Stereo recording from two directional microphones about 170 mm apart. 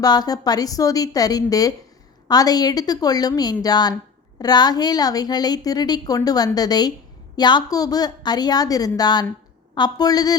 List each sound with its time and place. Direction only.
0.0 s a woman's voice: 20° left (ahead or behind)